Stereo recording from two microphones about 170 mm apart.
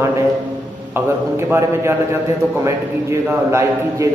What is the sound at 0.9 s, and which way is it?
A man's voice, 15° right (ahead or behind).